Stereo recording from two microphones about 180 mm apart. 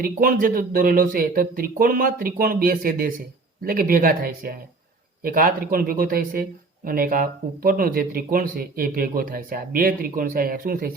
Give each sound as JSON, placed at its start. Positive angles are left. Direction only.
{"t": 0.0, "sound": "speech", "side_deg": -50}